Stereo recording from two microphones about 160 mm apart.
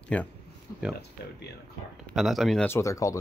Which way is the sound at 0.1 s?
5° left (ahead or behind).